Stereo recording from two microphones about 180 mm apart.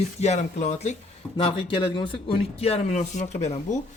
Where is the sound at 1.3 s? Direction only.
30° left (ahead or behind).